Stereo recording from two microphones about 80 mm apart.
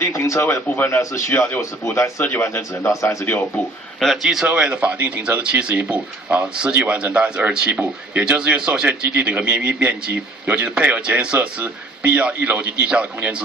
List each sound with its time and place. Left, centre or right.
0.0 s speech: left
4.0 s a man's voice: centre